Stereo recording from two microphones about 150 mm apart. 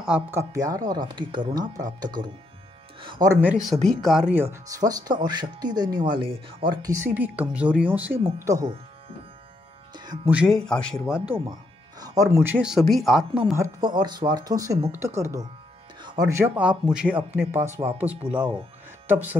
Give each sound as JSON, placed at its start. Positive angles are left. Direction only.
{"t": 0.0, "sound": "speech", "side_deg": -5}
{"t": 0.4, "sound": "speech", "side_deg": -20}
{"t": 3.3, "sound": "speech", "side_deg": -5}
{"t": 5.9, "sound": "speech", "side_deg": -70}
{"t": 6.1, "sound": "speech", "side_deg": -35}
{"t": 6.9, "sound": "speech", "side_deg": -15}
{"t": 8.4, "sound": "speech", "side_deg": -20}
{"t": 10.2, "sound": "speech", "side_deg": -5}
{"t": 10.6, "sound": "speech", "side_deg": 5}
{"t": 12.0, "sound": "speech", "side_deg": -25}
{"t": 13.6, "sound": "speech", "side_deg": -30}